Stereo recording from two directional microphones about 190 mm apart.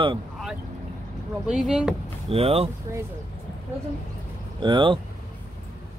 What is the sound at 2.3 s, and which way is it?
Speech, 30° right (ahead or behind).